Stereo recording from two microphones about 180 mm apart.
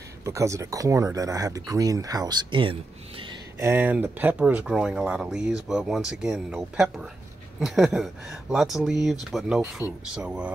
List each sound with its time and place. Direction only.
0.2 s speech: 15° right (ahead or behind)
3.5 s speech: 15° right (ahead or behind)